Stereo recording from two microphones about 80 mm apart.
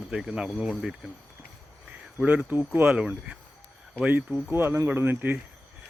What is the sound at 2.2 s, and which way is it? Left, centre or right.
Speech, centre.